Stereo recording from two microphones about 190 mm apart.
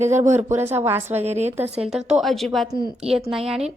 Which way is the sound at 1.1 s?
35° right (ahead or behind).